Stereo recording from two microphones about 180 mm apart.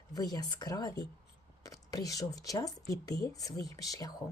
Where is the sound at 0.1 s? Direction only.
20° left (ahead or behind).